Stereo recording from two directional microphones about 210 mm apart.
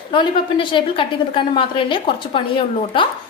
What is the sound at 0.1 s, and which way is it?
A woman's voice, 25° left (ahead or behind).